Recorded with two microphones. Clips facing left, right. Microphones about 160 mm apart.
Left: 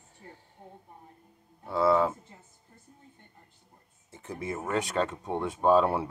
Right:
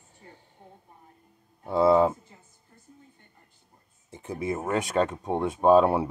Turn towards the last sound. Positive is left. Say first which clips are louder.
# right 4 dB
turn(degrees=-15)  # may be behind; listen again after turning